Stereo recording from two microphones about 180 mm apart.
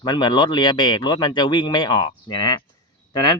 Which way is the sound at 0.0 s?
25° left (ahead or behind).